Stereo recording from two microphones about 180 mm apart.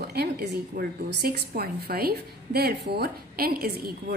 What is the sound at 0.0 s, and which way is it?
A woman's voice, 65° right (ahead or behind).